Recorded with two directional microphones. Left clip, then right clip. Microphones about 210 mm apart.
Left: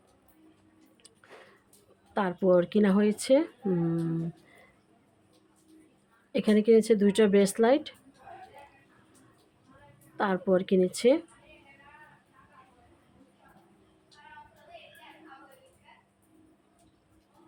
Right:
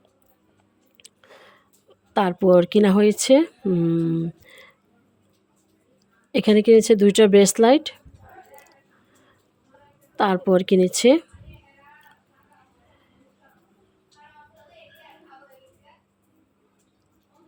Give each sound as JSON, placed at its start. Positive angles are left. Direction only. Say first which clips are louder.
{"t": 0.9, "sound": "chewing", "louder": "right 4 dB", "side_deg": -40}
{"t": 2.1, "sound": "speech", "louder": "right 8 dB", "side_deg": -40}
{"t": 6.3, "sound": "speech", "louder": "right 8 dB", "side_deg": -40}
{"t": 10.2, "sound": "speech", "louder": "right 8 dB", "side_deg": -40}